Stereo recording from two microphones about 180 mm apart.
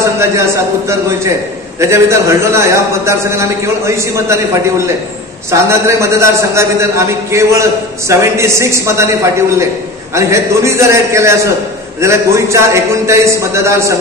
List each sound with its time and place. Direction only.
0.0 s a man's voice: 15° right (ahead or behind)
5.5 s a man's voice: 15° right (ahead or behind)